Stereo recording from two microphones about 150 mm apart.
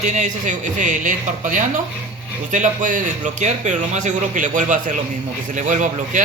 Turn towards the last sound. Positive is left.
turn(degrees=-55)  # may be behind; listen again after turning